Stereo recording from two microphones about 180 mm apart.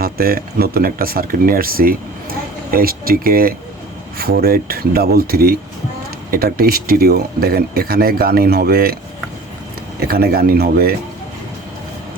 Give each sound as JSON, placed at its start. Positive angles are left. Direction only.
{"t": 0.0, "sound": "speech", "side_deg": -55}
{"t": 10.1, "sound": "speech", "side_deg": -55}